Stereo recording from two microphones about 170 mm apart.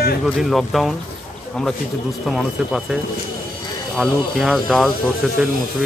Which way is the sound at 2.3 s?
Centre (ahead or behind).